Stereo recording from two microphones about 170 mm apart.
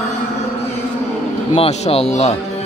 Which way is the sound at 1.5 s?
35° left (ahead or behind).